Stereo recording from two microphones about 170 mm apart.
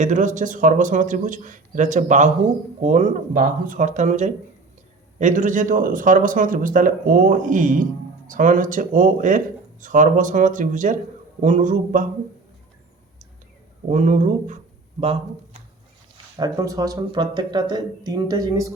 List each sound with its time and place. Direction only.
0.0 s speech: 45° right (ahead or behind)
13.8 s speech: 45° right (ahead or behind)
16.4 s speech: 20° right (ahead or behind)